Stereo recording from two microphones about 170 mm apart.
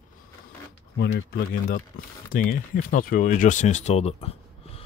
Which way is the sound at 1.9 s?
55° left (ahead or behind).